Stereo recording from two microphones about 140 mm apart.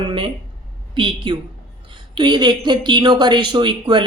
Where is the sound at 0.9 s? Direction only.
35° right (ahead or behind).